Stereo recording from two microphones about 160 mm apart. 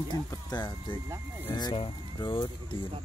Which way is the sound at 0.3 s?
25° left (ahead or behind).